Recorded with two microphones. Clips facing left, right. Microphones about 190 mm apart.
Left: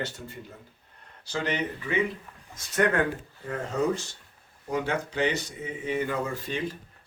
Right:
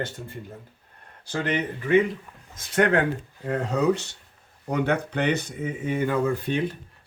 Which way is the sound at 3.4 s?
70° right (ahead or behind).